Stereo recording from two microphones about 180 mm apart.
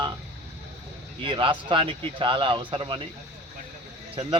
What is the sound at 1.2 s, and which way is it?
A man's voice, 30° right (ahead or behind).